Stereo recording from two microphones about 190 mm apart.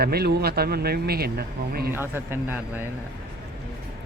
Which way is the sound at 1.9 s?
10° right (ahead or behind).